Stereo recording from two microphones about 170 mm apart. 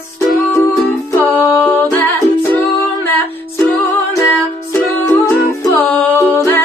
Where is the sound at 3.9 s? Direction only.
15° left (ahead or behind).